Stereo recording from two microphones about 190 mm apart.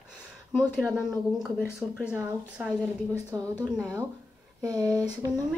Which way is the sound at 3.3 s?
20° right (ahead or behind).